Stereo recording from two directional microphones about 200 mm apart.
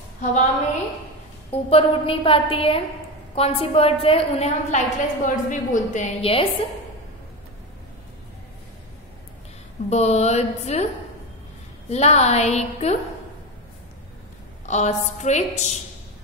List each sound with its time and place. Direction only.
0.2 s a woman's voice: 35° left (ahead or behind)
1.7 s a woman's voice: 30° left (ahead or behind)
9.8 s a woman's voice: 35° left (ahead or behind)
11.9 s a woman's voice: 35° left (ahead or behind)
14.7 s a woman's voice: 35° left (ahead or behind)